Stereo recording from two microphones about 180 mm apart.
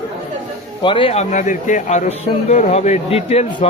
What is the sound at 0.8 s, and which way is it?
Speech, 30° left (ahead or behind).